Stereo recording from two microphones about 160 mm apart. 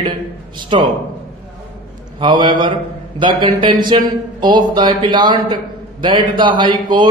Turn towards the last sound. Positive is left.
turn(degrees=-30)  # may be behind; listen again after turning